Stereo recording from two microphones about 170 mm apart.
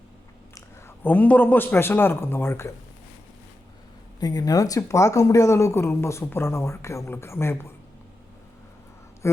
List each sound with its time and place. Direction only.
0.5 s a man's voice: 10° left (ahead or behind)
4.2 s speech: 20° left (ahead or behind)
9.2 s a sound: 15° left (ahead or behind)